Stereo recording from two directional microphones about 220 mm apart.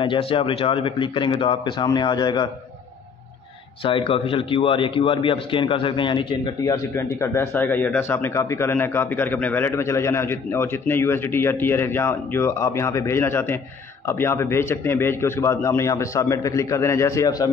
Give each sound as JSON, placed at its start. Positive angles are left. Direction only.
{"t": 0.0, "sound": "speech", "side_deg": 25}
{"t": 3.8, "sound": "speech", "side_deg": 25}